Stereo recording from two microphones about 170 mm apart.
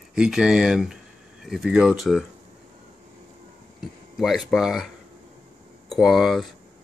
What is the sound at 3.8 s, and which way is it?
Speech, centre (ahead or behind).